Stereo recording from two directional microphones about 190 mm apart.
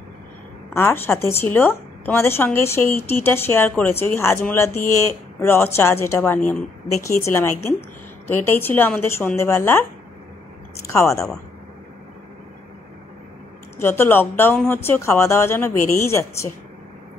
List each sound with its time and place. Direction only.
0.7 s a woman's voice: 10° left (ahead or behind)
10.9 s a woman's voice: 15° left (ahead or behind)
13.7 s a woman's voice: 10° left (ahead or behind)